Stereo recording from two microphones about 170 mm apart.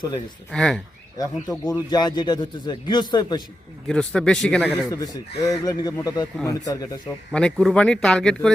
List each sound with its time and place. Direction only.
0.5 s speech: 5° left (ahead or behind)
1.2 s speech: 20° left (ahead or behind)
3.8 s speech: 5° left (ahead or behind)
4.9 s speech: 20° left (ahead or behind)
7.3 s speech: 5° left (ahead or behind)